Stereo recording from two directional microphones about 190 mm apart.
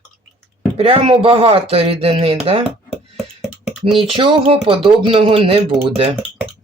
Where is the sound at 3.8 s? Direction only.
30° right (ahead or behind).